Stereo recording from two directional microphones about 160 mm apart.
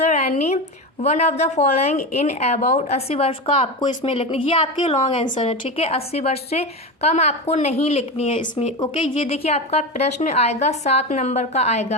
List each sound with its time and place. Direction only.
0.0 s a sound: 45° left (ahead or behind)
1.0 s a woman's voice: 45° left (ahead or behind); by 5.4 s 30° left (ahead or behind)
5.4 s a woman's voice: 40° left (ahead or behind)